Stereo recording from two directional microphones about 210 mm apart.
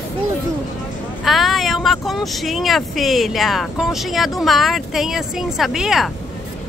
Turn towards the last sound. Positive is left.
turn(degrees=0)  # may be behind; listen again after turning